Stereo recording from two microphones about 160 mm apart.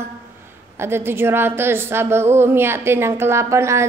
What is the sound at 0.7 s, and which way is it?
A woman's voice, 15° right (ahead or behind).